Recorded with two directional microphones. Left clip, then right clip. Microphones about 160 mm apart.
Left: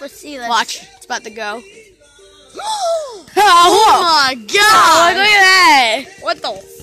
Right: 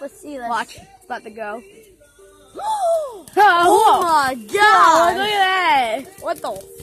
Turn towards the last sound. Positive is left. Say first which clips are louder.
# left 6 dB
turn(degrees=10)  # may be behind; listen again after turning